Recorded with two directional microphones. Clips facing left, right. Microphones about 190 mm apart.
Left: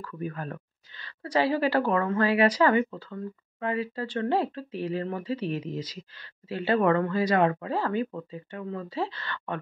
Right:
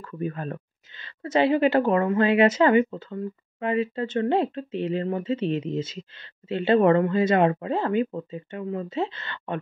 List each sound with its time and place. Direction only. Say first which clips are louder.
0.0 s speech: right 4 dB; 25° right (ahead or behind)